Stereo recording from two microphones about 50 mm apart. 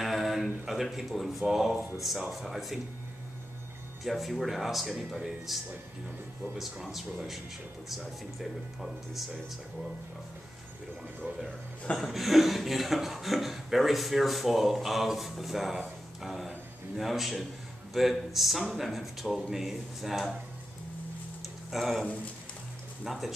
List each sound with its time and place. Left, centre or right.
0.0 s a sound: centre
0.7 s speech: centre
4.0 s speech: centre
12.0 s speech: centre
16.2 s a sound: centre
16.9 s speech: centre
21.7 s speech: centre
23.0 s speech: centre